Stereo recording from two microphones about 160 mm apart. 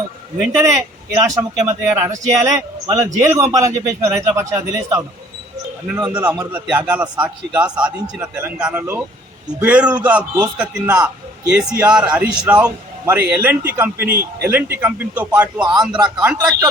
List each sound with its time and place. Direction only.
0.5 s speech: 20° right (ahead or behind)
6.1 s a man's voice: 10° right (ahead or behind)